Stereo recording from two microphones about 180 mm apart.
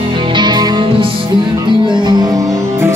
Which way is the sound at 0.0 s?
25° right (ahead or behind).